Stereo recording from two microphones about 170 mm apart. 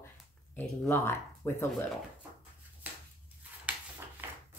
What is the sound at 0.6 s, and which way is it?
Speech, 15° left (ahead or behind).